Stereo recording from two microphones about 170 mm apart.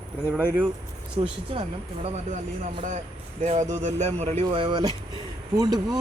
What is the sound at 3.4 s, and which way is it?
Speech, 45° right (ahead or behind).